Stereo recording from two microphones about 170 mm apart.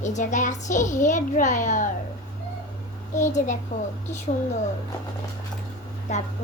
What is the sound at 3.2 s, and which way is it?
Speech, 45° left (ahead or behind).